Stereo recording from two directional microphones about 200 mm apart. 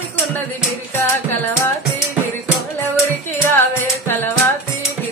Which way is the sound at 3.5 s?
10° left (ahead or behind).